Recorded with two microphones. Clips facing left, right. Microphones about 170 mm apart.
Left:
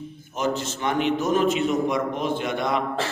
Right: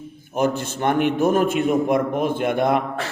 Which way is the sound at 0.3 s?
55° right (ahead or behind).